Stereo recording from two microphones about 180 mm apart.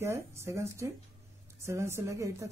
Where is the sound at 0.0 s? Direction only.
15° right (ahead or behind).